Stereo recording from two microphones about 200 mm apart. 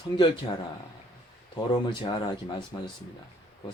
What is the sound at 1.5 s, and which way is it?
Speech, 20° left (ahead or behind).